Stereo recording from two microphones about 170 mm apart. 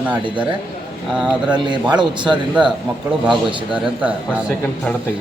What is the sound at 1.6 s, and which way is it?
Speech, 25° right (ahead or behind).